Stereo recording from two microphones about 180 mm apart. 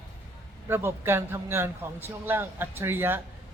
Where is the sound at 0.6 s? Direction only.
15° right (ahead or behind).